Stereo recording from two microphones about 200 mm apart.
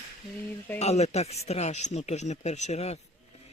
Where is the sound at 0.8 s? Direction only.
30° left (ahead or behind).